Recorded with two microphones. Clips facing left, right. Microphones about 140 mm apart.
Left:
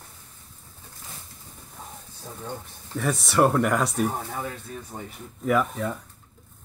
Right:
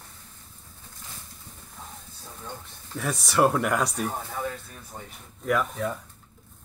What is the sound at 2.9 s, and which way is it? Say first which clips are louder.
Speech: left 2 dB; centre (ahead or behind).